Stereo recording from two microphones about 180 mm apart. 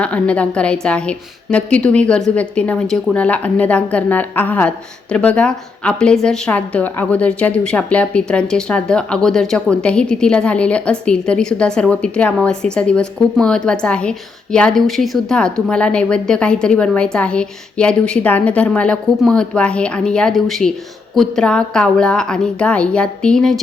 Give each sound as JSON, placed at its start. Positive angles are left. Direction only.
{"t": 0.0, "sound": "a woman's voice", "side_deg": 5}